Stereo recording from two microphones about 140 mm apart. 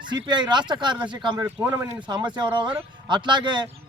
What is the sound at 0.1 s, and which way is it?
A man's voice, 35° right (ahead or behind).